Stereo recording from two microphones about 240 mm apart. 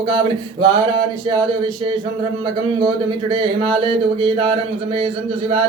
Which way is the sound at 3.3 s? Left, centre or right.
Right.